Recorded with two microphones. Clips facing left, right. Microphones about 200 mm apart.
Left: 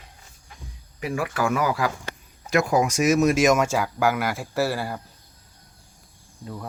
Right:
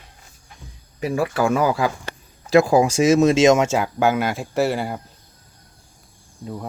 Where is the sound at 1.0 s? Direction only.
30° right (ahead or behind).